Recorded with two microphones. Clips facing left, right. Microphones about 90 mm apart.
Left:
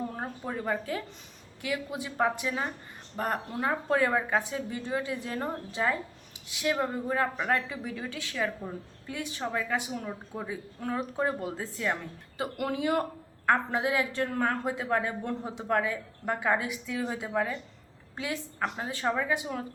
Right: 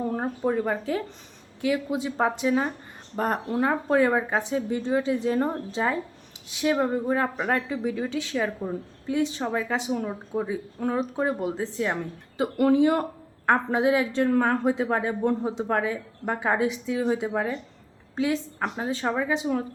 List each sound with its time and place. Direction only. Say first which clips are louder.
0.2 s a woman's voice: right 9 dB; 25° right (ahead or behind)